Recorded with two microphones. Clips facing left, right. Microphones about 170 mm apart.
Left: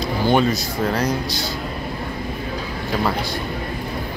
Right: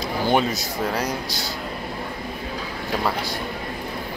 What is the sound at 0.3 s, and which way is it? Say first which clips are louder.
Speech: left 3 dB; 10° right (ahead or behind).